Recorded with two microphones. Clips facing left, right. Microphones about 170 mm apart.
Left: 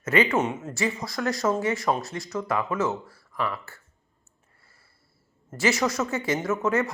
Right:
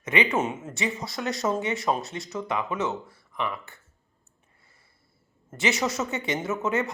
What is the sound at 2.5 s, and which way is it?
Speech, 20° right (ahead or behind).